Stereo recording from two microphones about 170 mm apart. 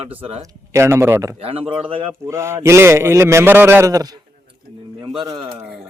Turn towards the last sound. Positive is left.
turn(degrees=-20)  # may be behind; listen again after turning